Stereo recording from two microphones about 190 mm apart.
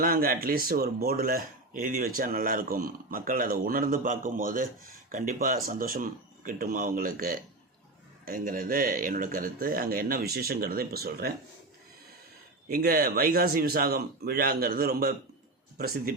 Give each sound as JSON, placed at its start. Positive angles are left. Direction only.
{"t": 0.0, "sound": "speech", "side_deg": -50}
{"t": 12.6, "sound": "speech", "side_deg": -50}